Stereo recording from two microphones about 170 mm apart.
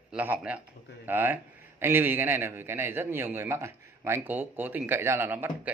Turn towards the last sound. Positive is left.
turn(degrees=-10)  # may be behind; listen again after turning